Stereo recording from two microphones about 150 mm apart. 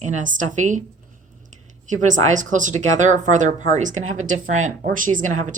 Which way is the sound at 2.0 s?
55° right (ahead or behind).